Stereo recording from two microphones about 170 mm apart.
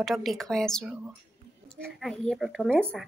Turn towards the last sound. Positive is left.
turn(degrees=0)  # may be behind; listen again after turning